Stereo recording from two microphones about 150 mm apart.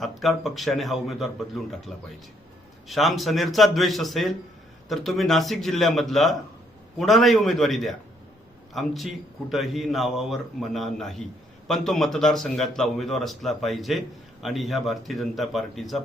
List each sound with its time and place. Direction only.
0.0 s a man's voice: centre (ahead or behind)